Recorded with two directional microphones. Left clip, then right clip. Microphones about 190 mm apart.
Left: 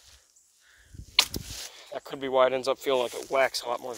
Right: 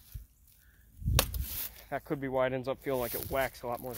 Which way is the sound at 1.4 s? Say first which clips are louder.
Left 5 dB; 55° right (ahead or behind).